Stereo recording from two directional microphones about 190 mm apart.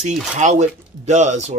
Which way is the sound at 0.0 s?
40° right (ahead or behind).